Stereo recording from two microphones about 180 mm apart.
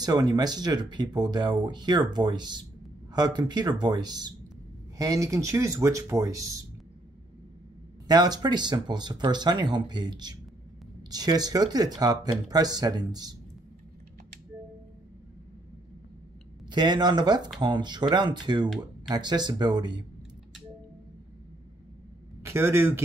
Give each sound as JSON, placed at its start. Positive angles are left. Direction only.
{"t": 0.0, "sound": "speech", "side_deg": -20}
{"t": 8.1, "sound": "speech", "side_deg": -20}
{"t": 16.6, "sound": "speech", "side_deg": -25}
{"t": 22.4, "sound": "a man's voice", "side_deg": -15}